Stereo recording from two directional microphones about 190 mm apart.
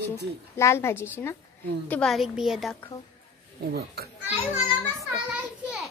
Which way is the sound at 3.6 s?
55° right (ahead or behind).